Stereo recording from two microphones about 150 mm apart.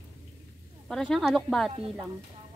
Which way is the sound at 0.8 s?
5° left (ahead or behind).